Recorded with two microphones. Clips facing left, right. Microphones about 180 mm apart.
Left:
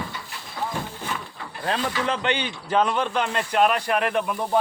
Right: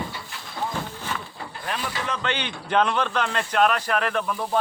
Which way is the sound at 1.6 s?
30° left (ahead or behind).